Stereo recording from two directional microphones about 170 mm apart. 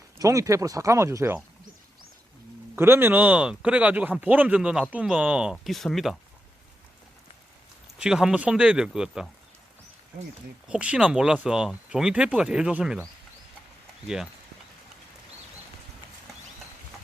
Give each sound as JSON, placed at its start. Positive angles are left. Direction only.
{"t": 0.2, "sound": "speech", "side_deg": -20}
{"t": 2.7, "sound": "speech", "side_deg": -15}
{"t": 7.9, "sound": "speech", "side_deg": -5}
{"t": 10.7, "sound": "speech", "side_deg": -5}